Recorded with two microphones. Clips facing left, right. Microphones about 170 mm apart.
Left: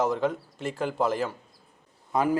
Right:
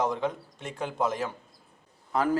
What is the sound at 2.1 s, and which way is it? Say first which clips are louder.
Speech: left 1 dB; 15° left (ahead or behind).